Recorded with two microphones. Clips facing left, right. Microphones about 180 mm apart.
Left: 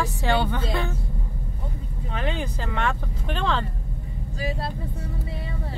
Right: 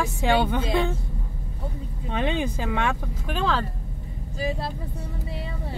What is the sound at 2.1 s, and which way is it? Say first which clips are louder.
Speech: right 4 dB; 20° right (ahead or behind).